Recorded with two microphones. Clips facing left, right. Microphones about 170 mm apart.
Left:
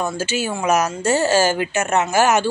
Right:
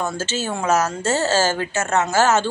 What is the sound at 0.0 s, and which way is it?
Speech, 10° left (ahead or behind).